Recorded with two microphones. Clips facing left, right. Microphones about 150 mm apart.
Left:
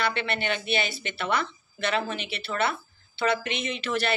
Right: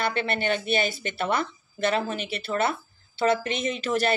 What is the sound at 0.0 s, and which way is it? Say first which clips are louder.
A woman's voice: right 2 dB; 45° right (ahead or behind).